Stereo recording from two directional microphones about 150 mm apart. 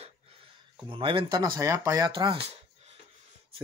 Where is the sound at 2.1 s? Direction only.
30° right (ahead or behind).